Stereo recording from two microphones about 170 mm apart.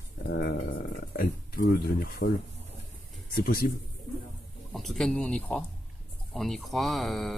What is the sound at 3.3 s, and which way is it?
Speech, 60° left (ahead or behind).